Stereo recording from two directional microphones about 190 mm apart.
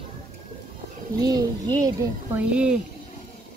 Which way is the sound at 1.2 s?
20° right (ahead or behind).